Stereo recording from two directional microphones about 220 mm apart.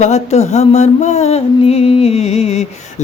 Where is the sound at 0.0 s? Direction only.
30° left (ahead or behind).